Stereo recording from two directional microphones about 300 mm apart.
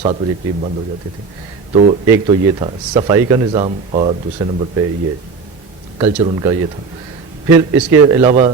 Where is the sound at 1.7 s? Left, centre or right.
Right.